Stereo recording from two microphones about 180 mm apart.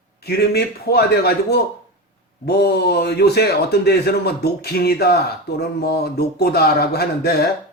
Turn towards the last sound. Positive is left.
turn(degrees=60)  # may be behind; listen again after turning